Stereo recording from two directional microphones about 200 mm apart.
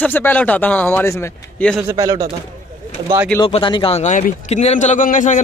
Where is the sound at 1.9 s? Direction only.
15° right (ahead or behind).